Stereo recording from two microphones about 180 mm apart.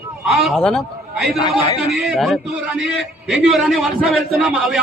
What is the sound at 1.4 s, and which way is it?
Speech, 25° left (ahead or behind).